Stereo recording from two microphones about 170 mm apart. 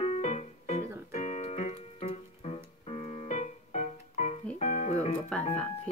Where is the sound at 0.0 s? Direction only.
40° left (ahead or behind).